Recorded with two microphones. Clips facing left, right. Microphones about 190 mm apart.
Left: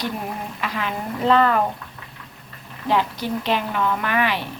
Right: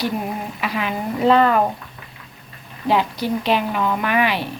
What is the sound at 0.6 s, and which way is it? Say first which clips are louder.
A woman's voice: right 3 dB; 15° right (ahead or behind).